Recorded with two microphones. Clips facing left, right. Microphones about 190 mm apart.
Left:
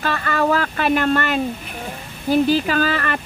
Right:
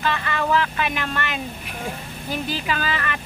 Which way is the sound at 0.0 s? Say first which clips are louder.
Left 4 dB; 45° left (ahead or behind).